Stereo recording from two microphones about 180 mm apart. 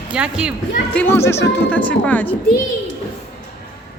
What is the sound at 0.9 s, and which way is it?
Speech, 15° left (ahead or behind).